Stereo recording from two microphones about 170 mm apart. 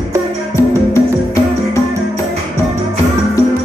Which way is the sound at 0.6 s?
15° left (ahead or behind).